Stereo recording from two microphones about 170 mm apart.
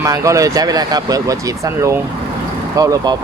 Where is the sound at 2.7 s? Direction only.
20° right (ahead or behind).